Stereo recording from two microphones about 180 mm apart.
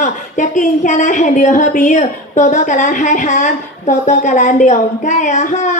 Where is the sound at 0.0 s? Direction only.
45° left (ahead or behind).